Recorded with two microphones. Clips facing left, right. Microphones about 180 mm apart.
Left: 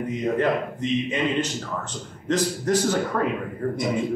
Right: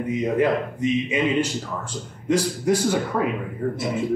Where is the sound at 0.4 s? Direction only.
10° right (ahead or behind).